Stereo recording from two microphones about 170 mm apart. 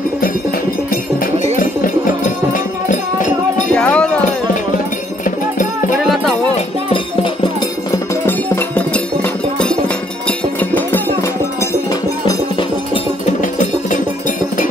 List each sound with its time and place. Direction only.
3.7 s cowbell: 5° left (ahead or behind)
8.3 s music: 10° left (ahead or behind)
10.2 s music: 10° left (ahead or behind)
12.3 s music: 30° left (ahead or behind)
13.2 s music: 50° left (ahead or behind)